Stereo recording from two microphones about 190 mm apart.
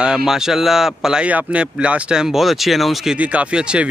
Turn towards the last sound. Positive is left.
turn(degrees=-5)  # may be behind; listen again after turning